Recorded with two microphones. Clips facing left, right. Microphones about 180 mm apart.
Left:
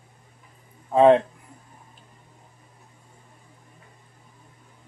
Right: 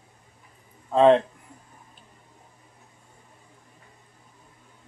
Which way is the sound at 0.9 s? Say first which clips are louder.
Left 1 dB; 15° left (ahead or behind).